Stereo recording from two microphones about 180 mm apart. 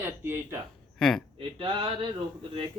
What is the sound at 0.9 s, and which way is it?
Speech, 5° left (ahead or behind).